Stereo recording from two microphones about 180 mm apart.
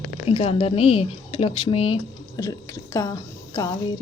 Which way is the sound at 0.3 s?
30° left (ahead or behind).